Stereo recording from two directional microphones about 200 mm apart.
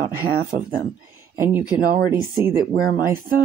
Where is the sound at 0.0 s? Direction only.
45° right (ahead or behind).